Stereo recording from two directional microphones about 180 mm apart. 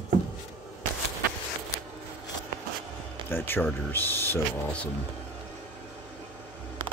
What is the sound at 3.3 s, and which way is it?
Speech, 10° left (ahead or behind).